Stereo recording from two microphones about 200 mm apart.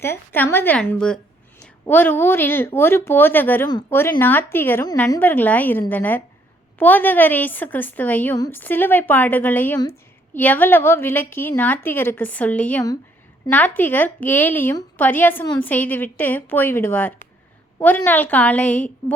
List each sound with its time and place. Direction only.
0.0 s a woman's voice: 10° left (ahead or behind)